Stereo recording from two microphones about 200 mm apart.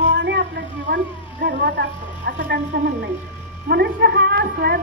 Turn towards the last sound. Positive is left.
turn(degrees=-55)  # may be behind; listen again after turning